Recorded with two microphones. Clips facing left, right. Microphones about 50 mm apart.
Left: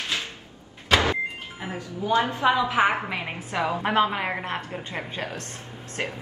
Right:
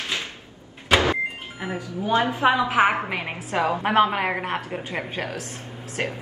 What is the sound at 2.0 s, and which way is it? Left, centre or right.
Speech, right.